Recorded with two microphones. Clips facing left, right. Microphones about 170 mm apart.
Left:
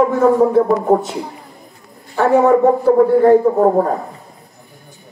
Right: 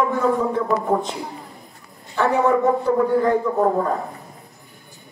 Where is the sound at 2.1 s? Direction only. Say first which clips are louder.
Left 6 dB; 45° left (ahead or behind).